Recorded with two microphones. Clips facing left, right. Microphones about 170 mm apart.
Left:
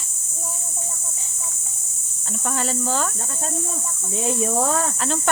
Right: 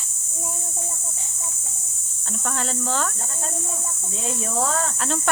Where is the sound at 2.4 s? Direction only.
5° left (ahead or behind).